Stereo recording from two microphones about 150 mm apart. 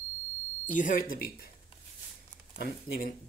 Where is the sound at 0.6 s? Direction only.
60° left (ahead or behind).